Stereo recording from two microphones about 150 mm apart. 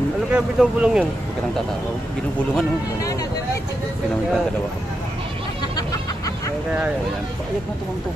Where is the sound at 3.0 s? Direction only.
25° left (ahead or behind).